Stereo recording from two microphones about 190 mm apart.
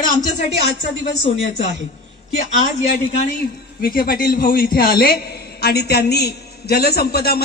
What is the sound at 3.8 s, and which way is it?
A woman's voice, 50° left (ahead or behind).